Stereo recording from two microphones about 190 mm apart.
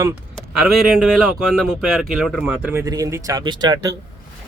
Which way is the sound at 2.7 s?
15° right (ahead or behind).